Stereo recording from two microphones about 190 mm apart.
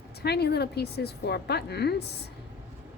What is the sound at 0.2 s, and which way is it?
A woman's voice, 60° left (ahead or behind).